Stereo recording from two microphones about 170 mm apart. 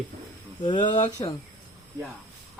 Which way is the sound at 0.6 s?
25° left (ahead or behind).